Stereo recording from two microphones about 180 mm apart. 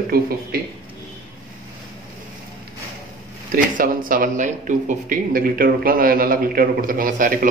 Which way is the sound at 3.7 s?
50° right (ahead or behind).